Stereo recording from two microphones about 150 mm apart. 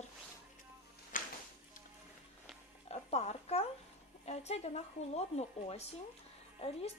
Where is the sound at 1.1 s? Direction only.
65° left (ahead or behind).